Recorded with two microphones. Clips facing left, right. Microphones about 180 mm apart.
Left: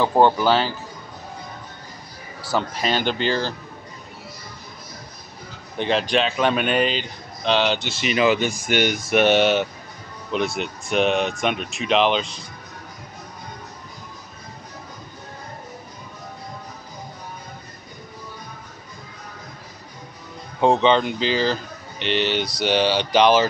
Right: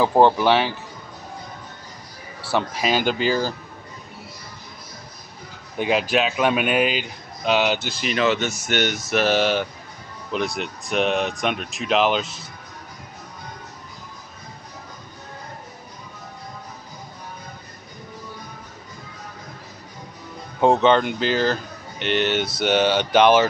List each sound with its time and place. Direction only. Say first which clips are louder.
0.0 s speech: right 1 dB; 5° right (ahead or behind)
2.5 s speech: right 1 dB; 5° right (ahead or behind)
5.8 s speech: even; 5° right (ahead or behind)
8.0 s speech: left 3 dB; 5° left (ahead or behind)
20.6 s speech: right 1 dB; 5° right (ahead or behind)
21.2 s speech: even; 50° right (ahead or behind)